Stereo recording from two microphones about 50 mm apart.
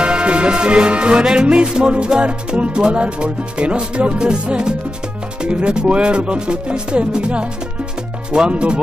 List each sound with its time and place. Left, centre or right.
0.0 s music: right